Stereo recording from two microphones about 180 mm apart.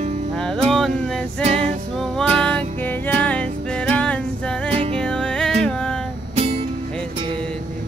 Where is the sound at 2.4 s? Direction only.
5° left (ahead or behind).